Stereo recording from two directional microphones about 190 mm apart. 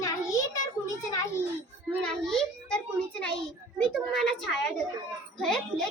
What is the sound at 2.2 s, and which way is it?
A child's voice, centre (ahead or behind).